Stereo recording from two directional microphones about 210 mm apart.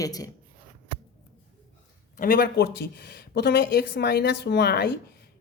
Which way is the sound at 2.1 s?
45° left (ahead or behind).